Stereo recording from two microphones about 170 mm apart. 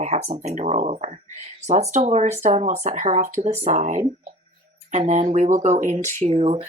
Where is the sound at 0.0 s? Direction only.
40° right (ahead or behind).